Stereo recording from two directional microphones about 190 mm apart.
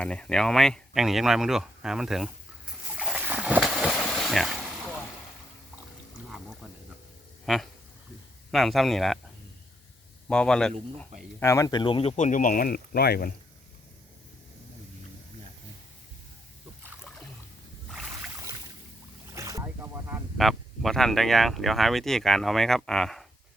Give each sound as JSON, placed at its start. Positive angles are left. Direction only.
{"t": 0.0, "sound": "speech", "side_deg": 5}
{"t": 3.0, "sound": "a sound", "side_deg": -5}
{"t": 7.4, "sound": "speech", "side_deg": 0}
{"t": 10.2, "sound": "speech", "side_deg": 5}
{"t": 11.3, "sound": "speech", "side_deg": 15}
{"t": 16.8, "sound": "a sound", "side_deg": 0}
{"t": 17.9, "sound": "boat", "side_deg": -5}
{"t": 19.3, "sound": "boat", "side_deg": -15}
{"t": 20.4, "sound": "speech", "side_deg": 0}